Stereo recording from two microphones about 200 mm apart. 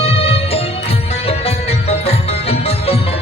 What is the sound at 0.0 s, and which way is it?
Music, 30° left (ahead or behind).